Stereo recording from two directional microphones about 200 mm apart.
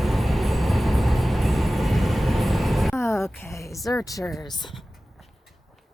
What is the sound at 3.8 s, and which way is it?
Speech, 15° left (ahead or behind).